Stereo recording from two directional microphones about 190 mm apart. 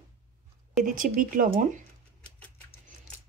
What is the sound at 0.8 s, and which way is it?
Speech, 45° right (ahead or behind).